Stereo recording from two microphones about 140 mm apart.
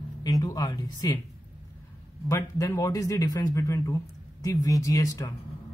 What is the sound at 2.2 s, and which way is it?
A man's voice, 20° left (ahead or behind).